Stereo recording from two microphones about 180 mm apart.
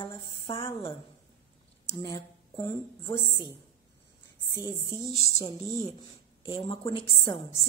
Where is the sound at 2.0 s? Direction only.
20° left (ahead or behind).